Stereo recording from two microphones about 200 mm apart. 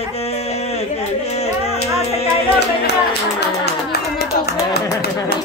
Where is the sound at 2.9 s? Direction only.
55° left (ahead or behind).